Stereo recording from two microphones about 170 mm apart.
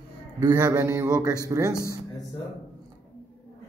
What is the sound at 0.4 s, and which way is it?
A man's voice, 20° right (ahead or behind).